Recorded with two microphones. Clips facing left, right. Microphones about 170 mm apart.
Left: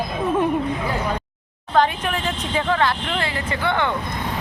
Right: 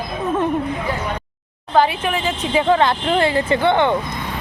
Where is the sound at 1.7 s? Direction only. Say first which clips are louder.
Right 3 dB; 5° right (ahead or behind).